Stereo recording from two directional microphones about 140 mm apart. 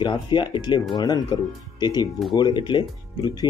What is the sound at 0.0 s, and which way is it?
Speech, 35° left (ahead or behind).